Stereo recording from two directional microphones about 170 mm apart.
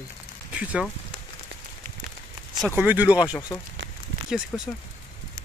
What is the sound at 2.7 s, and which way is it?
Speech, 10° right (ahead or behind).